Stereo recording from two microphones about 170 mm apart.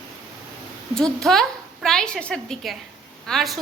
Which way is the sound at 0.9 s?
5° left (ahead or behind).